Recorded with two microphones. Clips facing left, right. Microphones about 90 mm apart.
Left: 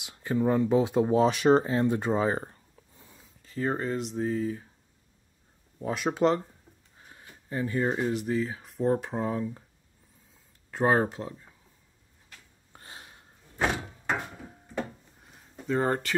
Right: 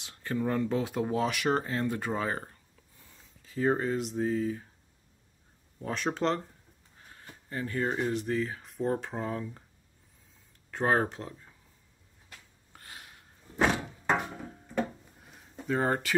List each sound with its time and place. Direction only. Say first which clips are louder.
0.0 s speech: left 5 dB; 15° left (ahead or behind)
3.4 s speech: right 2 dB; centre (ahead or behind)
5.8 s speech: left 5 dB; 10° left (ahead or behind)
10.7 s speech: left 3 dB; 5° left (ahead or behind)
12.7 s a sound: left 1 dB; 25° left (ahead or behind)
15.6 s speech: left 2 dB; 5° right (ahead or behind)